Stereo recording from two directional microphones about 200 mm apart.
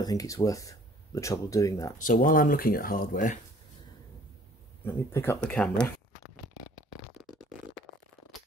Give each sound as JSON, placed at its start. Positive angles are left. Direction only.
{"t": 0.0, "sound": "speech", "side_deg": 15}
{"t": 2.0, "sound": "speech", "side_deg": 40}
{"t": 4.8, "sound": "speech", "side_deg": 10}
{"t": 7.2, "sound": "a sound", "side_deg": 0}